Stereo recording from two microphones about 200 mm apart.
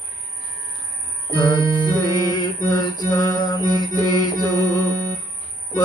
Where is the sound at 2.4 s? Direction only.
20° left (ahead or behind).